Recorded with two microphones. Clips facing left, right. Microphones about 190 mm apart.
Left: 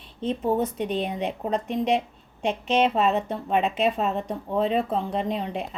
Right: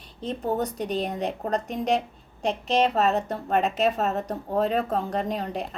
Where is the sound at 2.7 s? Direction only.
Centre (ahead or behind).